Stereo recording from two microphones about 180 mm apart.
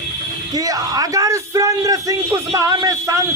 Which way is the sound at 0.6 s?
20° right (ahead or behind).